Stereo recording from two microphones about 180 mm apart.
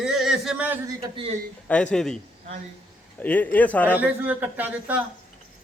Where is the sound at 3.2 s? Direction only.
10° left (ahead or behind).